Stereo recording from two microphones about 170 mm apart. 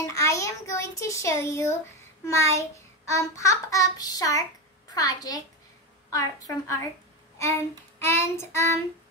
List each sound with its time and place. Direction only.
0.0 s a child's voice: 15° left (ahead or behind)
2.2 s child singing: 15° left (ahead or behind)
8.0 s child singing: 15° left (ahead or behind)